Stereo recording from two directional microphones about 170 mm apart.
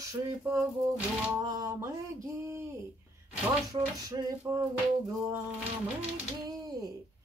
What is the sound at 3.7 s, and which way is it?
Speech, 20° right (ahead or behind).